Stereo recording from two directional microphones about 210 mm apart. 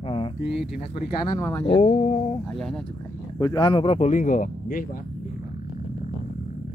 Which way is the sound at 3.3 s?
20° left (ahead or behind).